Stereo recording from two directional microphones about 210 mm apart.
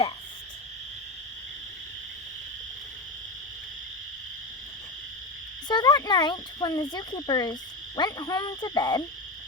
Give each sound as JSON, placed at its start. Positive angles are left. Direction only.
{"t": 5.6, "sound": "speech", "side_deg": 20}